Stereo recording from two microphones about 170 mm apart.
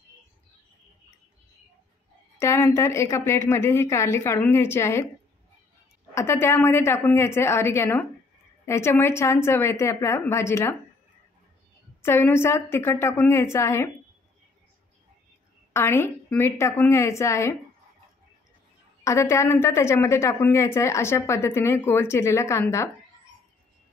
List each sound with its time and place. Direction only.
2.3 s a woman's voice: 15° left (ahead or behind)
6.1 s a woman's voice: 15° left (ahead or behind)
12.0 s a woman's voice: 15° left (ahead or behind)
15.7 s a woman's voice: 15° left (ahead or behind)
19.0 s a woman's voice: 15° left (ahead or behind)